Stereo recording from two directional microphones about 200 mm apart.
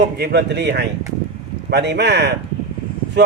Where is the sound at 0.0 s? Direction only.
55° right (ahead or behind).